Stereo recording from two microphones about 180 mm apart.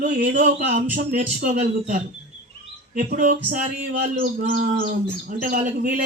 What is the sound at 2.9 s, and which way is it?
A man's voice, 50° right (ahead or behind).